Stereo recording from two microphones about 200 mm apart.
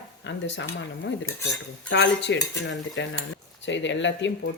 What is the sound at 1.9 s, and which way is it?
Speech, 60° left (ahead or behind).